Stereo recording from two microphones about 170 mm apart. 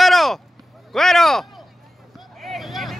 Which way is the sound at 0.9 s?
Centre (ahead or behind).